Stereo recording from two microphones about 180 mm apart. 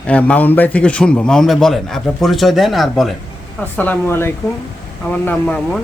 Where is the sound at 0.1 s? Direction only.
10° left (ahead or behind).